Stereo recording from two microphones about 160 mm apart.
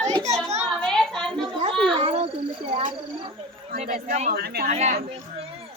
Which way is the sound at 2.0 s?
40° right (ahead or behind).